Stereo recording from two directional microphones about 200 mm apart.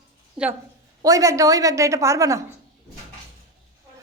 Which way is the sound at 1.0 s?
15° right (ahead or behind).